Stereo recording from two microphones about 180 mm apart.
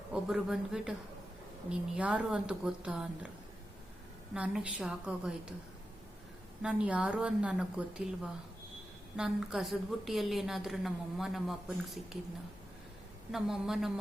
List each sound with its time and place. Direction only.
0.1 s a woman's voice: 5° right (ahead or behind)
2.0 s a woman's voice: 5° right (ahead or behind)
4.4 s a woman's voice: 5° right (ahead or behind)
6.6 s a woman's voice: 5° right (ahead or behind)
13.3 s a woman's voice: centre (ahead or behind)